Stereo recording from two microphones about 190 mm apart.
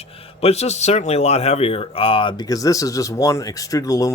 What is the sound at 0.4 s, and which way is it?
Speech, 35° left (ahead or behind).